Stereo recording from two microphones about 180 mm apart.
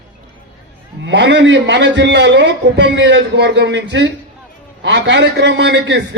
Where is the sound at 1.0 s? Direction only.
85° right.